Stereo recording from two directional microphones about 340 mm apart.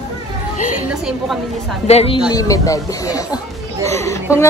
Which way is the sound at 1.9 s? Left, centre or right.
Centre.